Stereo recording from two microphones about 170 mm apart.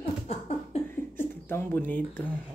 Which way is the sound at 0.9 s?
10° left (ahead or behind).